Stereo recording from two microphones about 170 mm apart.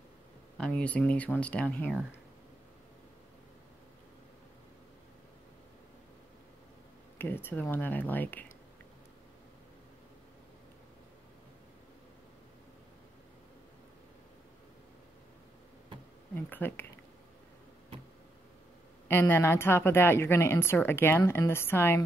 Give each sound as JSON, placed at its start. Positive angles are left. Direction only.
{"t": 0.6, "sound": "a woman's voice", "side_deg": 5}
{"t": 7.2, "sound": "a woman's voice", "side_deg": 10}
{"t": 16.3, "sound": "a woman's voice", "side_deg": 10}
{"t": 19.0, "sound": "a woman's voice", "side_deg": 15}